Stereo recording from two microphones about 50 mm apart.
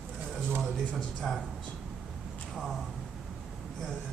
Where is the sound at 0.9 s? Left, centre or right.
Centre.